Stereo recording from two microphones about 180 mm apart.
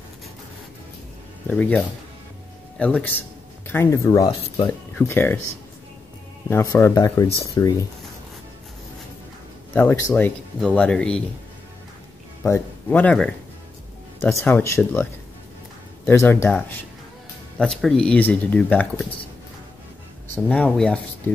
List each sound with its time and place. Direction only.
1.5 s speech: 10° left (ahead or behind)
6.5 s speech: 15° left (ahead or behind)
9.8 s speech: 10° left (ahead or behind)
12.4 s speech: 10° left (ahead or behind)
14.4 s speech: 15° left (ahead or behind)
16.1 s speech: 15° left (ahead or behind)
17.6 s speech: 5° left (ahead or behind)
20.4 s speech: 5° left (ahead or behind)